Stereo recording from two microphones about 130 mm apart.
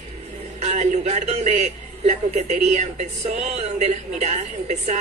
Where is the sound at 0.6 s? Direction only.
60° right (ahead or behind).